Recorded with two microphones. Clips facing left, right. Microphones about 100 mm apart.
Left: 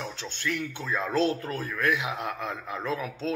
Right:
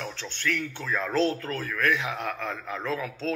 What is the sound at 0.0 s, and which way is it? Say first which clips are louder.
Speech: right 1 dB; 20° left (ahead or behind).